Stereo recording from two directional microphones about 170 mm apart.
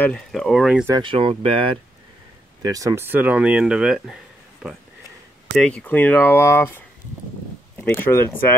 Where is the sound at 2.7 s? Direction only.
20° right (ahead or behind); by 4.1 s 5° right (ahead or behind).